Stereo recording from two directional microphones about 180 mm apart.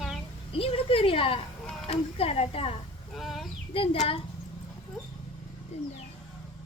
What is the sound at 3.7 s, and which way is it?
Speech, 30° left (ahead or behind).